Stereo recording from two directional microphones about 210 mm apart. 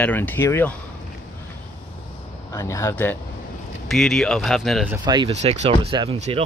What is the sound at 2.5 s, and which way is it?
Speech, 15° left (ahead or behind).